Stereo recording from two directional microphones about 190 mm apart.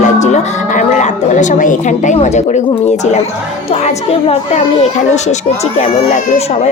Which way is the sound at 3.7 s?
35° left (ahead or behind).